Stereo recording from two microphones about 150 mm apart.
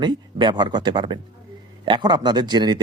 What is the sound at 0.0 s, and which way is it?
Speech, 30° right (ahead or behind).